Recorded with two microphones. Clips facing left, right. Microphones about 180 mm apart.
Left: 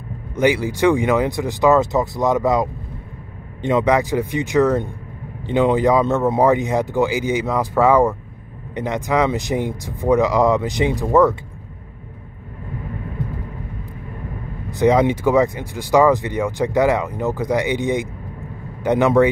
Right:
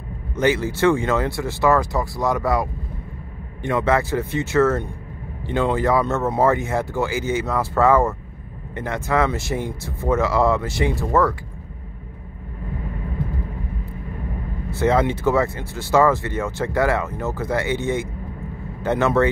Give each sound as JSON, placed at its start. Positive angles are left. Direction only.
{"t": 0.4, "sound": "speech", "side_deg": 15}
{"t": 14.7, "sound": "speech", "side_deg": 15}